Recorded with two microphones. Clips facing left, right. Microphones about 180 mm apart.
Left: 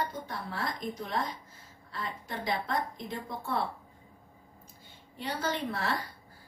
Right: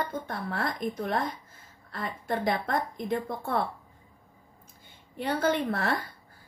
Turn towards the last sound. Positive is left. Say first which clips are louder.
# right 4 dB
turn(degrees=-55)  # may be behind; listen again after turning